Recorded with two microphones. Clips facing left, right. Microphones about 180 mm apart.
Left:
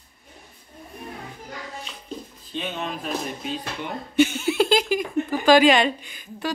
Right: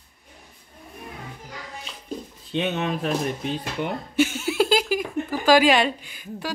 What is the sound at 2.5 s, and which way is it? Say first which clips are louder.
Speech: right 5 dB; 65° right (ahead or behind).